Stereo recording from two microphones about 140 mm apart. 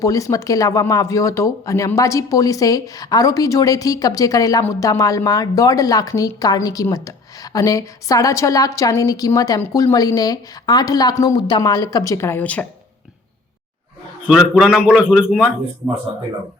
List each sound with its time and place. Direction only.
0.0 s a woman's voice: 25° left (ahead or behind)
14.3 s a man's voice: 5° right (ahead or behind)